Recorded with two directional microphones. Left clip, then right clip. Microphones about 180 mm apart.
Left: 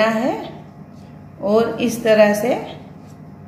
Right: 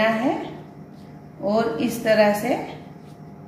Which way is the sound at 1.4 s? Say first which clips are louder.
Left 5 dB; 45° left (ahead or behind).